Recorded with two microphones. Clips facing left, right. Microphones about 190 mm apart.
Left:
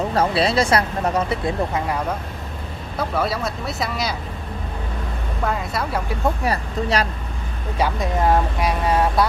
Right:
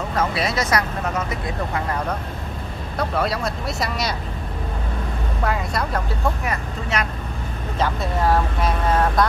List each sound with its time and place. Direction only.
0.1 s speech: 30° left (ahead or behind)
3.0 s speech: centre (ahead or behind)
5.4 s speech: centre (ahead or behind)
6.4 s speech: 35° left (ahead or behind)
7.8 s speech: 15° left (ahead or behind)